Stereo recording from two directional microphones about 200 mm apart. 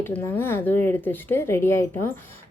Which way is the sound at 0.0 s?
10° left (ahead or behind).